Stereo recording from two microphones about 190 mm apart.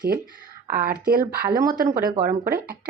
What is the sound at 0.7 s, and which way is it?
Speech, 50° right (ahead or behind).